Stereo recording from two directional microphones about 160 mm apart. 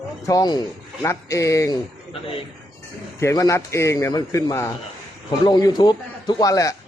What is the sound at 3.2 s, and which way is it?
Speech, 20° left (ahead or behind).